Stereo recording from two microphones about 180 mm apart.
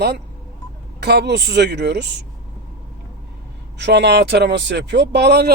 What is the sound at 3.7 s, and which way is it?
Speech, 70° right (ahead or behind).